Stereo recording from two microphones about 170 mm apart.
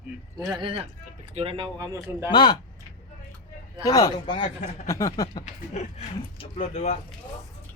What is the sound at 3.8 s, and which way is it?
Speech, 20° left (ahead or behind).